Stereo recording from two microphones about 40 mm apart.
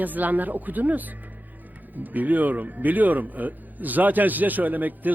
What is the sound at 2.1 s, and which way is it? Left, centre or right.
A man's voice, right.